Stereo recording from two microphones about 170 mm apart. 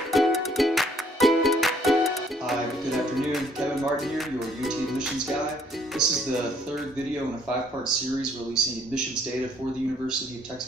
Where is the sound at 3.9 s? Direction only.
Centre (ahead or behind).